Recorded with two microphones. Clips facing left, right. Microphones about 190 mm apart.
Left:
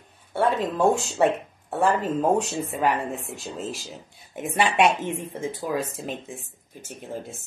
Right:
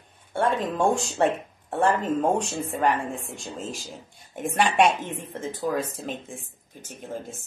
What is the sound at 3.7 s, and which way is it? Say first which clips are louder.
Speech: left 1 dB; 45° right (ahead or behind).